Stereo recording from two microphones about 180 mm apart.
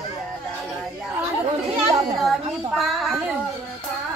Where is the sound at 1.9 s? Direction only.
Centre (ahead or behind).